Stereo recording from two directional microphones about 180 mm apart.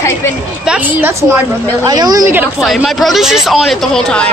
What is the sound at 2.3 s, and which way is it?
Speech, 5° right (ahead or behind).